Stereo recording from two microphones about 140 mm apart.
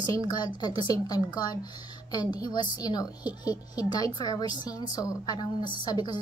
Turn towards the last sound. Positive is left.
turn(degrees=30)  # may be behind; listen again after turning